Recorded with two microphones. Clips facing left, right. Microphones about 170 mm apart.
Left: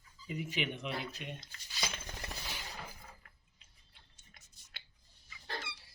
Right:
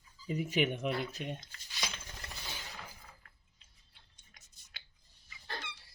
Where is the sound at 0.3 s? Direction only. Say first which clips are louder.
Right 6 dB; 45° right (ahead or behind).